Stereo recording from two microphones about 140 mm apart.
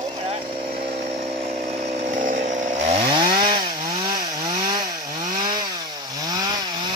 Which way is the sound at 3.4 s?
35° right (ahead or behind).